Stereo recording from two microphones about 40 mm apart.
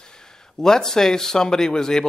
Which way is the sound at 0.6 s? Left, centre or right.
Centre.